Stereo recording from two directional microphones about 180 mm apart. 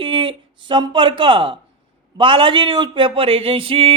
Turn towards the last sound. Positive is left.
turn(degrees=-30)  # may be behind; listen again after turning